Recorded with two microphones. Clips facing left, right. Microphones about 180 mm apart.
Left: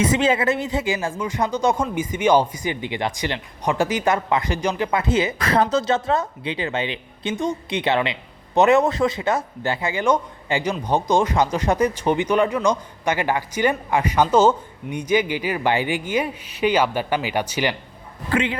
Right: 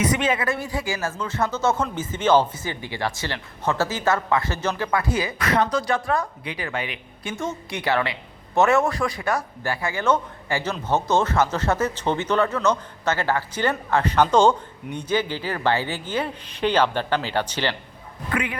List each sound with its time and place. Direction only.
0.0 s speech: 25° left (ahead or behind); by 17.7 s 10° left (ahead or behind)
18.3 s speech: 25° left (ahead or behind)